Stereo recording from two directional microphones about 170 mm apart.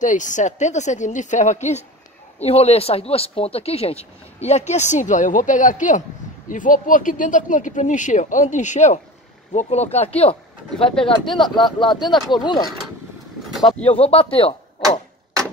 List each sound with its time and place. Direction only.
0.0 s speech: 45° left (ahead or behind); by 12.6 s 25° left (ahead or behind)
13.8 s speech: 35° left (ahead or behind)